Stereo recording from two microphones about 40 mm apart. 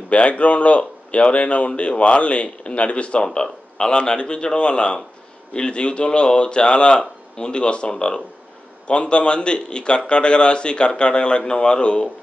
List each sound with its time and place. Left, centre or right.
0.1 s a man's voice: left